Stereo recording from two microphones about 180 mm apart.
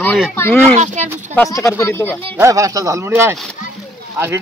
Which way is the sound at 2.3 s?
15° right (ahead or behind).